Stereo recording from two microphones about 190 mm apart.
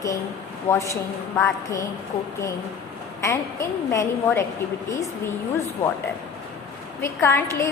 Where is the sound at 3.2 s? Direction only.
15° left (ahead or behind).